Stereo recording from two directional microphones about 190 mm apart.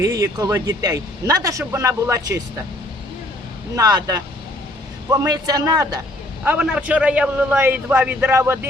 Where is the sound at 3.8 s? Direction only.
20° right (ahead or behind).